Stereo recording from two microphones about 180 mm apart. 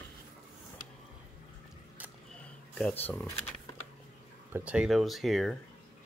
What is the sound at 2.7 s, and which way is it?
Speech, 10° left (ahead or behind).